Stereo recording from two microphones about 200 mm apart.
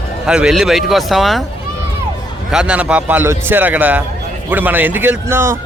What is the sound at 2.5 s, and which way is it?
A man's voice, 5° right (ahead or behind).